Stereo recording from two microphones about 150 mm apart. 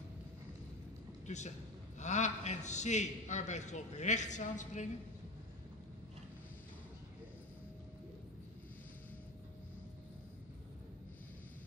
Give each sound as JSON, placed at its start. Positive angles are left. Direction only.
{"t": 1.2, "sound": "a man's voice", "side_deg": 50}